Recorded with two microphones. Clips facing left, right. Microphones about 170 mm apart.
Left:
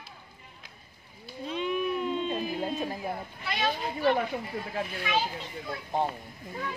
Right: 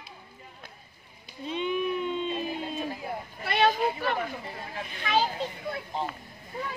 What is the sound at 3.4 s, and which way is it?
Children playing, 60° right (ahead or behind).